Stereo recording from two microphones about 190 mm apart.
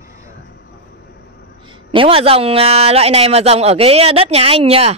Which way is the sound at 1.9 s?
30° right (ahead or behind).